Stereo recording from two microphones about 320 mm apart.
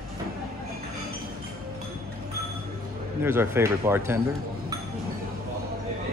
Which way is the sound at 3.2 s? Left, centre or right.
Centre.